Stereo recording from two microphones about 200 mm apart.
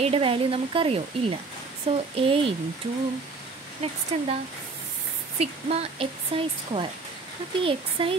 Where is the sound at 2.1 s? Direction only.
30° right (ahead or behind).